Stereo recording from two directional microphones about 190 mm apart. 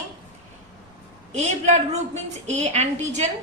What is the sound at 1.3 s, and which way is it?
Child singing, 35° right (ahead or behind).